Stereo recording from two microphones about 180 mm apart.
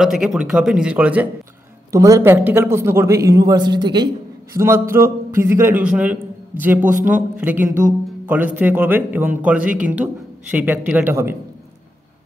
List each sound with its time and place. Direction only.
0.0 s speech: 5° right (ahead or behind)